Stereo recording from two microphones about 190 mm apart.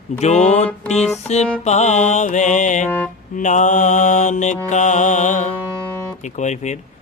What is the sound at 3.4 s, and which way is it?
Mantra, 40° left (ahead or behind).